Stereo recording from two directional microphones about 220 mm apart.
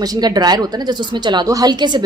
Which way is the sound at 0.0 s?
15° right (ahead or behind).